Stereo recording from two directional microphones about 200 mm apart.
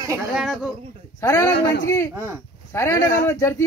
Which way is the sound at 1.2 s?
15° left (ahead or behind).